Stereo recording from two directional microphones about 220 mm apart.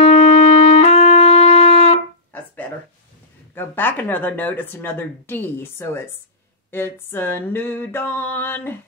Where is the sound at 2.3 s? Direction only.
10° left (ahead or behind).